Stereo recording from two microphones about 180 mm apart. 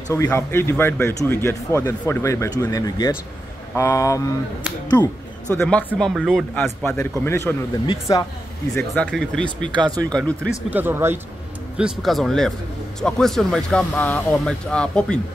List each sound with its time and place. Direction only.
0.1 s speech: 15° left (ahead or behind)
6.6 s speech: 15° left (ahead or behind)
8.7 s speech: 5° left (ahead or behind)
9.8 s speech: 20° right (ahead or behind); by 15.1 s 5° left (ahead or behind)